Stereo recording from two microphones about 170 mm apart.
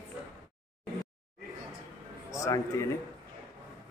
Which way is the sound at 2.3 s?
20° left (ahead or behind).